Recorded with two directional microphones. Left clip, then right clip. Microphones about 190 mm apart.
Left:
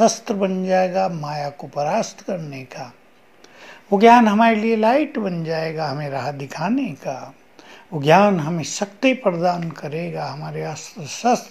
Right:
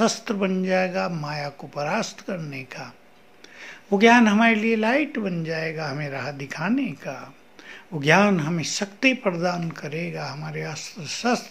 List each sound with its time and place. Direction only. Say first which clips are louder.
0.0 s speech: left 6 dB; centre (ahead or behind)
5.5 s a man's voice: left 4 dB; 20° right (ahead or behind)
5.8 s speech: left 5 dB; centre (ahead or behind)